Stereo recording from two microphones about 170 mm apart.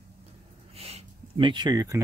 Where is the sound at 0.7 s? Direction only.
35° right (ahead or behind).